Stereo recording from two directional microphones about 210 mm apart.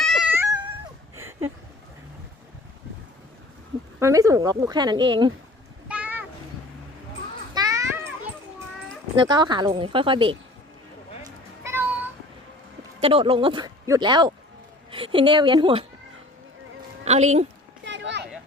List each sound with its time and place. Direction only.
0.0 s cat: centre (ahead or behind)
1.1 s a sound: 10° right (ahead or behind)
4.0 s speech: 15° right (ahead or behind)
5.9 s a sound: 5° right (ahead or behind)
7.5 s children playing: 15° right (ahead or behind)
9.1 s speech: 20° right (ahead or behind)
11.2 s cat: 10° right (ahead or behind)
13.0 s speech: 25° right (ahead or behind)
17.1 s a woman's voice: 30° right (ahead or behind)
17.8 s children playing: 60° right (ahead or behind)